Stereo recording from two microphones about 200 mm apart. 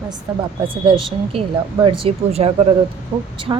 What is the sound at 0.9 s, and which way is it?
Speech, 25° right (ahead or behind).